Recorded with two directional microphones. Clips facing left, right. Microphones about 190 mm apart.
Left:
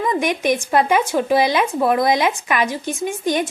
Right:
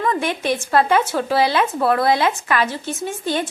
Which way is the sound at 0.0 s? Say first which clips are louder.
Left 2 dB; 15° left (ahead or behind).